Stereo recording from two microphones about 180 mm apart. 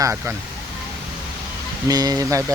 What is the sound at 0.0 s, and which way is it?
Speech, 15° right (ahead or behind).